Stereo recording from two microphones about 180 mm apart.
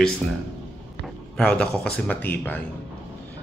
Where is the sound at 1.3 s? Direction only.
5° left (ahead or behind).